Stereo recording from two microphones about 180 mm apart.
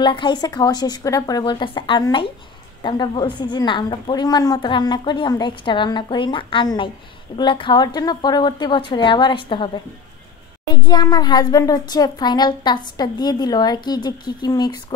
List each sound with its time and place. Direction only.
0.0 s a child's voice: 25° left (ahead or behind)
10.7 s a child's voice: 25° left (ahead or behind)